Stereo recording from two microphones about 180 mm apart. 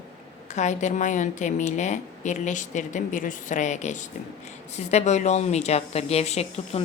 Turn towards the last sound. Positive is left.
turn(degrees=35)  # may be behind; listen again after turning